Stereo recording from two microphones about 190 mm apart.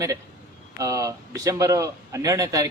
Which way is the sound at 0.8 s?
15° right (ahead or behind).